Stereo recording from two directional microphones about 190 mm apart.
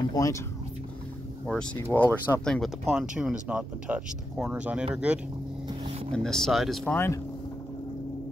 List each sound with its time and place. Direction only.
0.1 s speech: 15° left (ahead or behind)
1.5 s speech: 5° left (ahead or behind)